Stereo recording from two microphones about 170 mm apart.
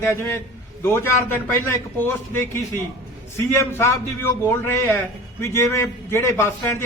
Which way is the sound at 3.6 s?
15° left (ahead or behind).